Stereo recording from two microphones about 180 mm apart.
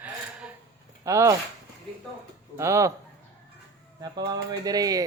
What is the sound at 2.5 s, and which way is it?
Speech, 15° right (ahead or behind).